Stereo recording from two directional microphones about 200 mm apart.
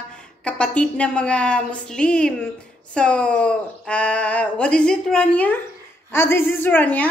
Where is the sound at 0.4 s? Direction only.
5° left (ahead or behind).